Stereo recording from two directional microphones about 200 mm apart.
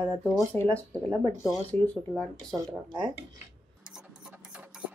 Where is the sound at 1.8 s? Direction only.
5° left (ahead or behind).